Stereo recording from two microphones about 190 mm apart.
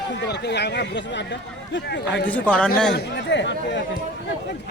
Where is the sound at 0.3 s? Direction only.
65° left (ahead or behind).